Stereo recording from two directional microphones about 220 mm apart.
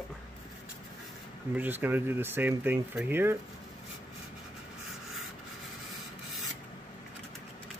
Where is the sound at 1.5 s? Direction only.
10° right (ahead or behind).